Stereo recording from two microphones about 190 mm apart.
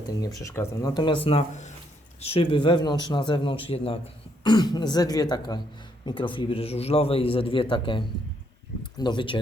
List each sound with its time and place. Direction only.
0.2 s a man's voice: 20° left (ahead or behind)